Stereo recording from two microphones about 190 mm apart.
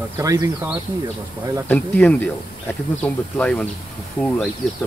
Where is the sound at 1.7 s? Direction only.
10° left (ahead or behind).